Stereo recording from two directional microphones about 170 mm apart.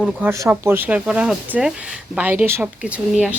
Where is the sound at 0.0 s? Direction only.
5° right (ahead or behind).